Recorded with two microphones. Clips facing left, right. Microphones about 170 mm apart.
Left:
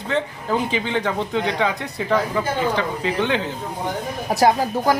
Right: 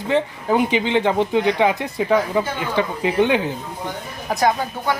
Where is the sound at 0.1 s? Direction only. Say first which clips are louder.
Right 4 dB; 15° right (ahead or behind).